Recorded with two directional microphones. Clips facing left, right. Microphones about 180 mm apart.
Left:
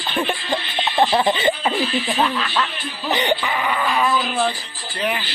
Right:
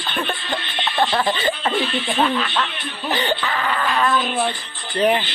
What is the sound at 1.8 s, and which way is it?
Speech, centre (ahead or behind).